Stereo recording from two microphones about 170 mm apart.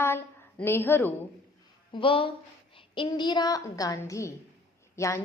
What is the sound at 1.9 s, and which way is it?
A woman's voice, 30° left (ahead or behind).